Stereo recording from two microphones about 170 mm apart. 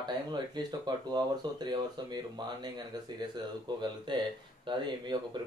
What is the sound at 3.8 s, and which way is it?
Speech, 25° right (ahead or behind).